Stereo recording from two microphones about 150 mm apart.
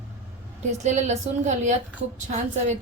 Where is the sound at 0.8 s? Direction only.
50° right (ahead or behind).